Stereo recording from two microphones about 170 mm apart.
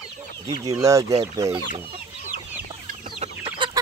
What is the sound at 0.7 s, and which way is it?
Speech, 20° right (ahead or behind).